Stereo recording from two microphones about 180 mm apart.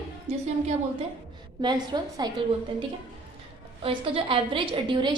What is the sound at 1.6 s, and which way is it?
Speech, 25° right (ahead or behind).